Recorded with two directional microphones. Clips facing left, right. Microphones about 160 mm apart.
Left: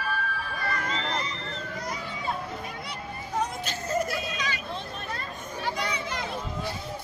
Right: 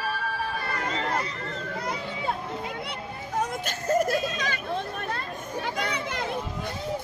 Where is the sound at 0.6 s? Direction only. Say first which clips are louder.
Right 1 dB; 65° right (ahead or behind).